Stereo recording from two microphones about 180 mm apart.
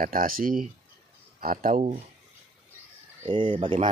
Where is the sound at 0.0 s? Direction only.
50° right (ahead or behind).